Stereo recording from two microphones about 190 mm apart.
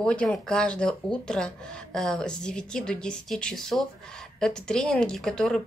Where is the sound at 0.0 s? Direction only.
5° left (ahead or behind).